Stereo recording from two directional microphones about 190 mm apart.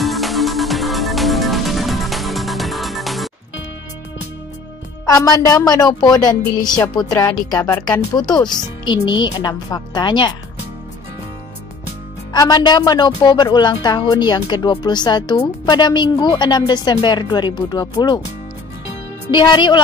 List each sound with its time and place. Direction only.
0.0 s music: centre (ahead or behind)
5.1 s speech: 20° left (ahead or behind)
12.3 s speech: 20° left (ahead or behind)
19.3 s speech: 25° left (ahead or behind)